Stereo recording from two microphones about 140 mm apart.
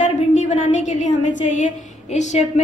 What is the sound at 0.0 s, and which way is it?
A woman's voice, 60° left (ahead or behind).